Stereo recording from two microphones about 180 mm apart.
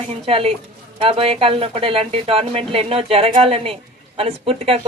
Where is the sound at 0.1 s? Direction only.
30° right (ahead or behind).